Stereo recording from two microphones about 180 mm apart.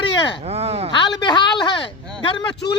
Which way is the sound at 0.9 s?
25° left (ahead or behind).